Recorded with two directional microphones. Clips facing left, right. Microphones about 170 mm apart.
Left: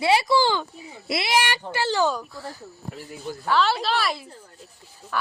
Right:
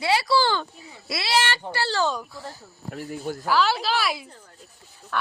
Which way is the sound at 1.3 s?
15° left (ahead or behind).